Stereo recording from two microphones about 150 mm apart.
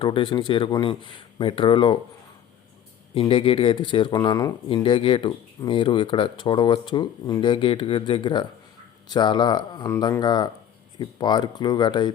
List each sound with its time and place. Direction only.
0.0 s speech: 35° left (ahead or behind)
3.2 s speech: 35° left (ahead or behind)